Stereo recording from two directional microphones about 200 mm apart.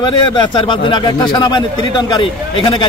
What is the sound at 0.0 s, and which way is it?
A man's voice, 20° left (ahead or behind).